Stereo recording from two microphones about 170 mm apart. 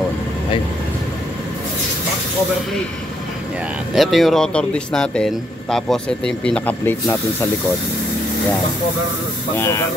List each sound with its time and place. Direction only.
3.9 s speech: centre (ahead or behind)
9.6 s speech: 15° left (ahead or behind)